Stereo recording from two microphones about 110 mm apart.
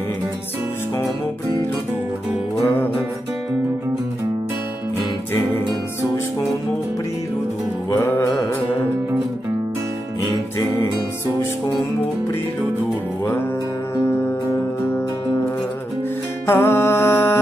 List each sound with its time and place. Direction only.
8.0 s music: 20° left (ahead or behind)
13.9 s music: 25° left (ahead or behind)
16.4 s music: 20° left (ahead or behind)